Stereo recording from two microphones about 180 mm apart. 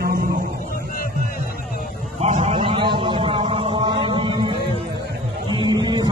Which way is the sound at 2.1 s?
40° right (ahead or behind).